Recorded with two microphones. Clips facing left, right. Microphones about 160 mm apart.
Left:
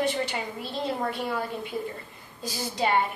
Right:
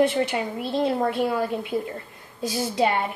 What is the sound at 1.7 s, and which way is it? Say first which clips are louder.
Speech: right 4 dB; 30° right (ahead or behind).